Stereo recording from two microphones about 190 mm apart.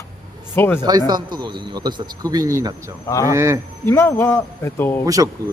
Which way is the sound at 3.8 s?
15° left (ahead or behind).